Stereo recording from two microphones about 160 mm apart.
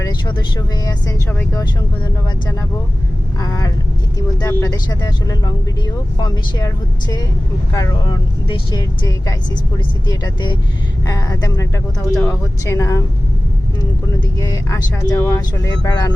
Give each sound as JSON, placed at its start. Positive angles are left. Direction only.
{"t": 0.0, "sound": "speech", "side_deg": 25}
{"t": 3.4, "sound": "speech", "side_deg": 25}
{"t": 14.3, "sound": "speech", "side_deg": 25}